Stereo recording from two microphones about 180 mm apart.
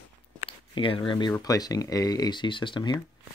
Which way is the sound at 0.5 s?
30° left (ahead or behind).